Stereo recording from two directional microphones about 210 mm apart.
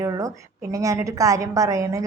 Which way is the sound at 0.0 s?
15° right (ahead or behind).